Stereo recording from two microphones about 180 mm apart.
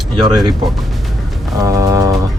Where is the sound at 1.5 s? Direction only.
15° right (ahead or behind).